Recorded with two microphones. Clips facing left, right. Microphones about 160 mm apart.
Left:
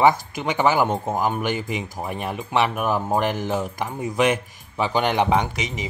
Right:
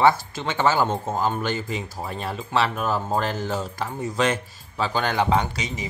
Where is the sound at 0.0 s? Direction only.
15° left (ahead or behind).